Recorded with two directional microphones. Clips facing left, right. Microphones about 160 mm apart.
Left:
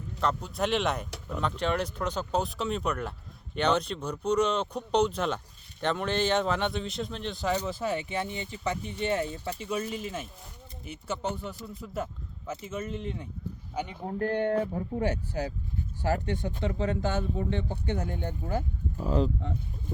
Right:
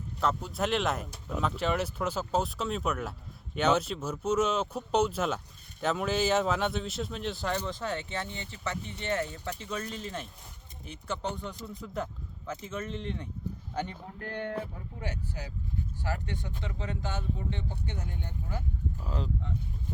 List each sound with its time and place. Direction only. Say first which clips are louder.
0.2 s speech: left 1 dB; centre (ahead or behind)
7.5 s speech: left 3 dB; 10° left (ahead or behind)
14.1 s speech: left 9 dB; 35° left (ahead or behind)
14.7 s speech: left 11 dB; 50° left (ahead or behind)
16.0 s speech: left 9 dB; 35° left (ahead or behind); by 17.6 s 50° left (ahead or behind)
17.6 s speech: left 7 dB; 60° left (ahead or behind)